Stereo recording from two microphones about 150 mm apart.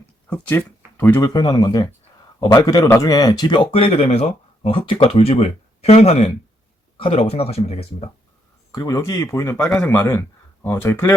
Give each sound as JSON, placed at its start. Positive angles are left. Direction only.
{"t": 0.3, "sound": "speech", "side_deg": 10}
{"t": 1.3, "sound": "speech", "side_deg": 25}
{"t": 8.7, "sound": "speech", "side_deg": 20}
{"t": 9.6, "sound": "speech", "side_deg": 0}
{"t": 9.8, "sound": "speech", "side_deg": 15}